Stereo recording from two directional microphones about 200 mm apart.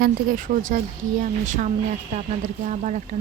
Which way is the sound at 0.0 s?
40° right (ahead or behind).